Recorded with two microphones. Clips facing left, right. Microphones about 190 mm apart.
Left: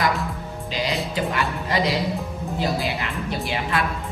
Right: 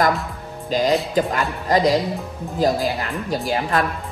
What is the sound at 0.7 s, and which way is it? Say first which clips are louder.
Speech: right 7 dB; 45° right (ahead or behind).